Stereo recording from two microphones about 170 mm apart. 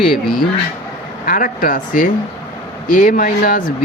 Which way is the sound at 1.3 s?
55° left (ahead or behind).